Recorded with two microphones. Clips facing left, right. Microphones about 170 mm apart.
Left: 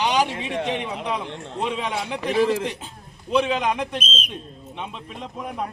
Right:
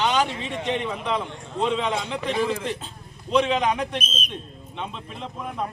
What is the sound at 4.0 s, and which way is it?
Speech, 25° left (ahead or behind).